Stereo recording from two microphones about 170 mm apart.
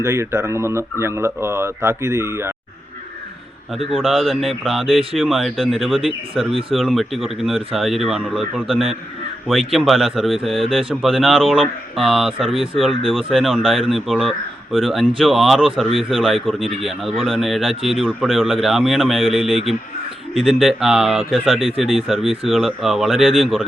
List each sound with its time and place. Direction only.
0.0 s speech: 15° right (ahead or behind)
3.9 s speech: centre (ahead or behind)